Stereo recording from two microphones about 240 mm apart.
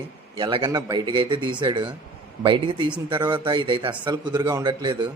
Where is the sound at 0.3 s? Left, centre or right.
Centre.